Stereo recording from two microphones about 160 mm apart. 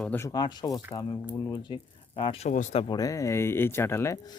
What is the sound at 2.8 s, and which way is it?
A man's voice, 25° left (ahead or behind).